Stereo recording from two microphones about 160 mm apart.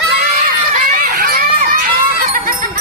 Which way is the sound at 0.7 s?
60° right (ahead or behind).